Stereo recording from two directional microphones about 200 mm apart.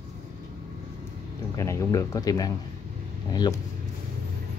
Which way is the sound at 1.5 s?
15° left (ahead or behind).